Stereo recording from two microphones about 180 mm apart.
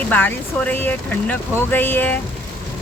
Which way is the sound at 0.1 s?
10° left (ahead or behind).